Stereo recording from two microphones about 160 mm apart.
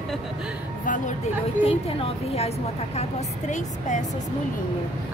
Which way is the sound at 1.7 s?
40° left (ahead or behind).